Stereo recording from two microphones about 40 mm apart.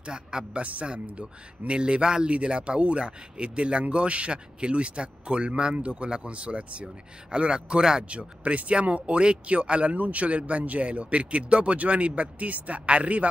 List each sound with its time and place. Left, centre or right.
0.0 s a man's voice: centre
0.6 s a man's voice: right
8.1 s speech: right